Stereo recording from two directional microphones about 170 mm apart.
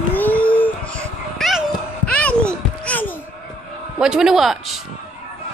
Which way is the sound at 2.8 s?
10° left (ahead or behind).